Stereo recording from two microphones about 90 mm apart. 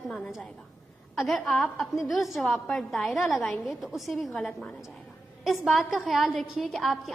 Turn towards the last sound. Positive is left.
turn(degrees=0)  # may be behind; listen again after turning